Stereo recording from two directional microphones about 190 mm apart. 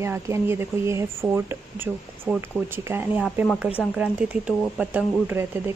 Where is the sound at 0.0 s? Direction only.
15° right (ahead or behind).